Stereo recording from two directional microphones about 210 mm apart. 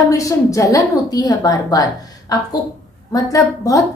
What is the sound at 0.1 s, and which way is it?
A woman's voice, 15° left (ahead or behind).